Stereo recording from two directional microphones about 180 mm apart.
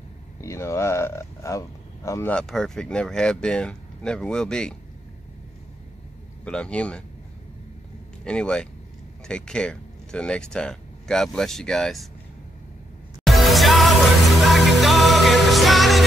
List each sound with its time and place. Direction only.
0.4 s speech: 15° left (ahead or behind)
2.3 s speech: 5° left (ahead or behind)
6.4 s speech: 5° left (ahead or behind)
8.2 s speech: 5° left (ahead or behind)
13.2 s music: centre (ahead or behind)